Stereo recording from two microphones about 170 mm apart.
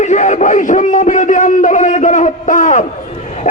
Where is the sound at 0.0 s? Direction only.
45° left (ahead or behind).